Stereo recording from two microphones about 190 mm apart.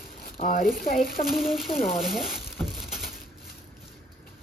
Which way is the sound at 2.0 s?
Centre (ahead or behind).